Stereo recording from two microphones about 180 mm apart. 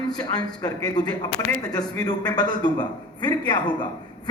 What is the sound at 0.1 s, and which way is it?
Speech, 20° left (ahead or behind).